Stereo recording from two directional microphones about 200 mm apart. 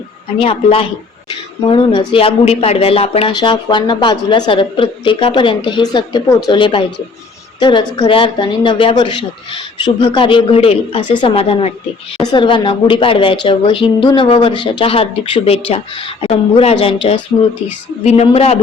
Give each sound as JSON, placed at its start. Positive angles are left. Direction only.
{"t": 0.3, "sound": "speech", "side_deg": 25}